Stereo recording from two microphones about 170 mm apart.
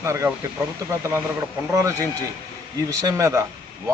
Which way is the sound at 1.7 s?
20° right (ahead or behind).